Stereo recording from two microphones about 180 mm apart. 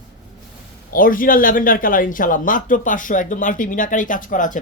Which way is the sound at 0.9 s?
50° left (ahead or behind).